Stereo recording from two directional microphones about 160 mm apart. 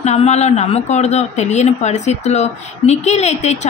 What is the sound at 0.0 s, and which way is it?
A woman's voice, 45° left (ahead or behind).